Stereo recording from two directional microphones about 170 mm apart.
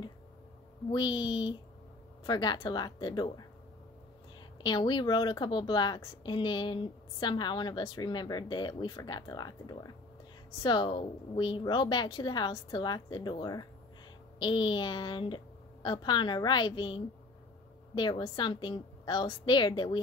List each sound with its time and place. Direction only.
0.9 s a woman's voice: 25° left (ahead or behind)
4.6 s a woman's voice: 25° left (ahead or behind)